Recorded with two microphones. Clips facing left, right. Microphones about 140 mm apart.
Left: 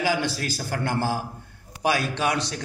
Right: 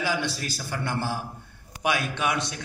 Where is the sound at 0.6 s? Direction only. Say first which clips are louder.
Left 4 dB; 40° left (ahead or behind).